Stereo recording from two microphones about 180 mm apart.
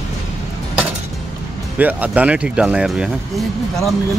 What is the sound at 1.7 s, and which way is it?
Speech, 10° right (ahead or behind).